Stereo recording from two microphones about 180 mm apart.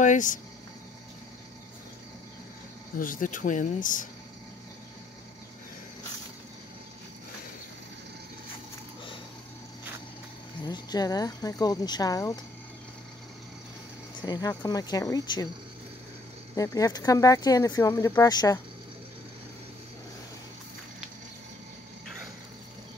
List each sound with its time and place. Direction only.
0.0 s speech: 45° left (ahead or behind)
3.0 s speech: 50° left (ahead or behind)
10.6 s speech: 20° left (ahead or behind)
14.2 s speech: 20° left (ahead or behind)
16.5 s speech: 20° left (ahead or behind)